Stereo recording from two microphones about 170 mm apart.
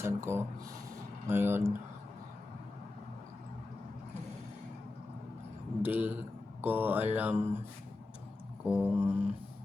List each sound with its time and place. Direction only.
0.0 s speech: 15° right (ahead or behind)
5.8 s speech: 10° right (ahead or behind)
8.6 s speech: 10° right (ahead or behind)